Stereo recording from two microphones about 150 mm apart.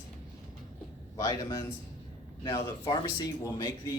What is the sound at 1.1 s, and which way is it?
Speech, 20° left (ahead or behind).